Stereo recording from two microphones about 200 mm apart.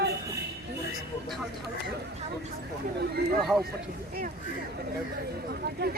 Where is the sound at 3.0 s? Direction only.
50° right (ahead or behind).